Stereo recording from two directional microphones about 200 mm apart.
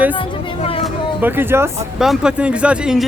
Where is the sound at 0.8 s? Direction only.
10° right (ahead or behind).